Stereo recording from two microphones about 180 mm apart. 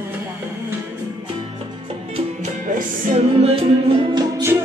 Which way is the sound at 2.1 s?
45° right (ahead or behind).